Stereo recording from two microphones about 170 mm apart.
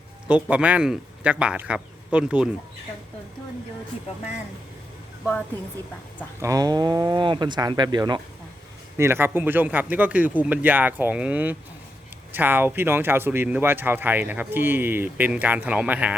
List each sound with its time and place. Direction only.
0.5 s speech: 10° right (ahead or behind)
6.4 s speech: 20° right (ahead or behind)
9.0 s speech: 15° right (ahead or behind)